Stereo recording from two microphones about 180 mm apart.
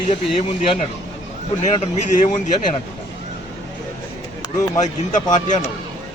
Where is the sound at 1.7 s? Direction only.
40° left (ahead or behind).